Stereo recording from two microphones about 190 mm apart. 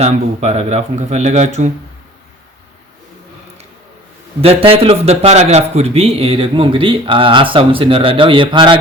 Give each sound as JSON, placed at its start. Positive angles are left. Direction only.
{"t": 0.0, "sound": "speech", "side_deg": -35}
{"t": 4.4, "sound": "a man's voice", "side_deg": -30}